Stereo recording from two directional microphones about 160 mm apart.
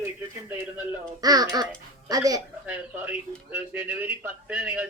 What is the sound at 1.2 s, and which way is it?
Speech, 25° right (ahead or behind).